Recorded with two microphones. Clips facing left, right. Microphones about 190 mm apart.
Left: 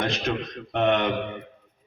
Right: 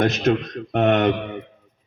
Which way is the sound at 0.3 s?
50° right (ahead or behind).